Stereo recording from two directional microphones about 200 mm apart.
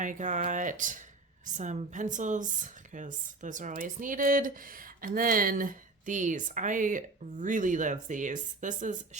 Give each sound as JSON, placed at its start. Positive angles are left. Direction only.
{"t": 0.0, "sound": "speech", "side_deg": -40}